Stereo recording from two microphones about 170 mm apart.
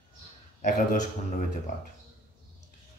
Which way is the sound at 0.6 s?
45° left (ahead or behind).